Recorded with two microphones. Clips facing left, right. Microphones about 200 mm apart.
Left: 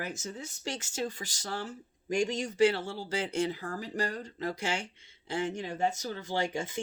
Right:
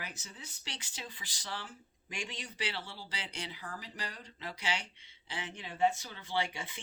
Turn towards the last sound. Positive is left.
turn(degrees=45)  # may be behind; listen again after turning